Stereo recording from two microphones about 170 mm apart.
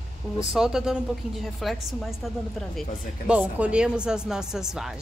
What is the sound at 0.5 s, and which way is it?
Speech, centre (ahead or behind).